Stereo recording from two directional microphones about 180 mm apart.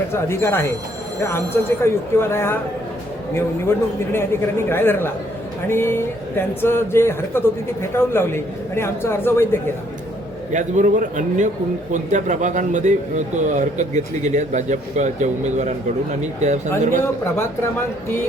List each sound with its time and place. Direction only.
0.1 s speech: 15° left (ahead or behind)
1.8 s speech: 15° left (ahead or behind)
4.1 s speech: 15° left (ahead or behind)
10.5 s a man's voice: 45° right (ahead or behind)
17.0 s speech: 15° left (ahead or behind)